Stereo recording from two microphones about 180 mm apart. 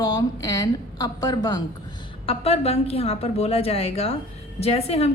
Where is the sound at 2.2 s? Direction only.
35° left (ahead or behind).